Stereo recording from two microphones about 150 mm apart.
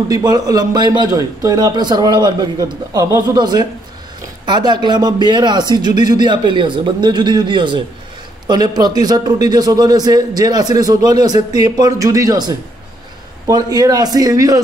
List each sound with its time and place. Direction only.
0.1 s a man's voice: 25° right (ahead or behind)